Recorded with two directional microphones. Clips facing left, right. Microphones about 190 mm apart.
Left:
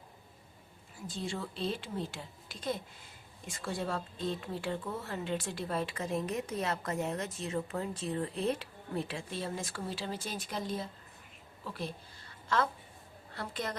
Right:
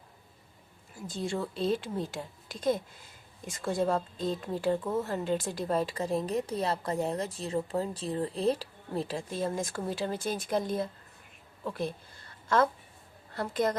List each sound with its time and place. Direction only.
1.3 s a woman's voice: 45° right (ahead or behind)
13.3 s a woman's voice: 45° right (ahead or behind)